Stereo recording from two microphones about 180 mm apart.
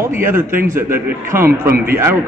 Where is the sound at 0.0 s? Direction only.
10° right (ahead or behind).